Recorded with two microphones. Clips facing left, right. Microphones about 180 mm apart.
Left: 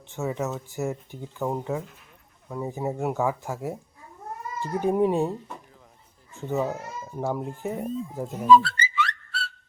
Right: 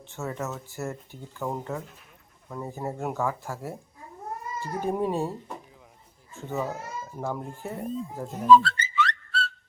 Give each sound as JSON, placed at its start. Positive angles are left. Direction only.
{"t": 0.1, "sound": "speech", "side_deg": 15}
{"t": 6.3, "sound": "speech", "side_deg": 15}